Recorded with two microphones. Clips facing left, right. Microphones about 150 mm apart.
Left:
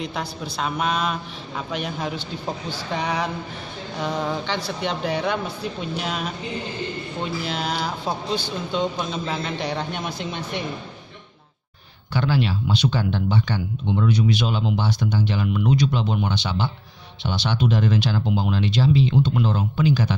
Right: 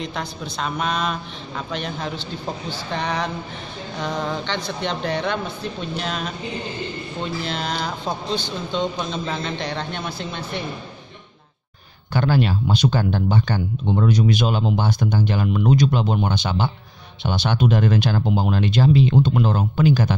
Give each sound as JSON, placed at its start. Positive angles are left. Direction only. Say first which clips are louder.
{"t": 0.0, "sound": "a woman's voice", "louder": "even", "side_deg": 5}
{"t": 7.4, "sound": "speech", "louder": "even", "side_deg": 5}
{"t": 12.1, "sound": "speech", "louder": "right 3 dB", "side_deg": -50}